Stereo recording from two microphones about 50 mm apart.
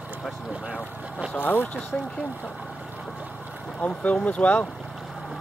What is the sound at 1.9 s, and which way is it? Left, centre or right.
Speech, centre.